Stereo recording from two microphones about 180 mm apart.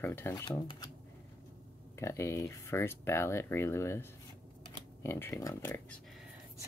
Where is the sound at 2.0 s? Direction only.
15° left (ahead or behind).